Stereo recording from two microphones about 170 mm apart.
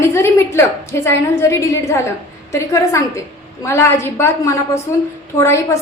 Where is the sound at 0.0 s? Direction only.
15° left (ahead or behind).